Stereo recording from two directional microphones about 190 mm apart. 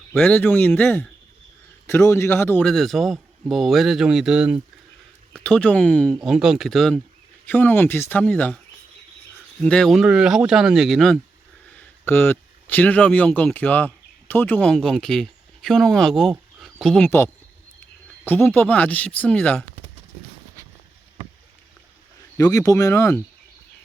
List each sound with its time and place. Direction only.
0.1 s a man's voice: 5° left (ahead or behind)
9.6 s a man's voice: 5° left (ahead or behind)
18.3 s speech: 10° left (ahead or behind)
22.4 s speech: 20° left (ahead or behind)